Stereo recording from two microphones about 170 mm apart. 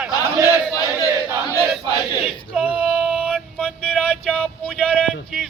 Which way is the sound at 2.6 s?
5° right (ahead or behind).